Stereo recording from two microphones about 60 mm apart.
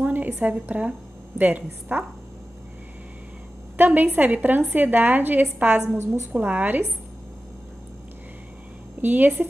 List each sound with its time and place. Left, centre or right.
0.0 s a sound: right
0.5 s a woman's voice: right
3.7 s a woman's voice: right
9.0 s a woman's voice: right